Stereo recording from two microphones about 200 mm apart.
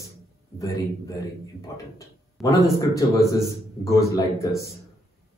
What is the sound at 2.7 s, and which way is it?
Speech, 15° left (ahead or behind).